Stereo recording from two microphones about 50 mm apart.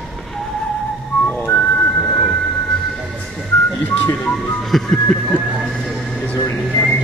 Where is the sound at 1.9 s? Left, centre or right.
Centre.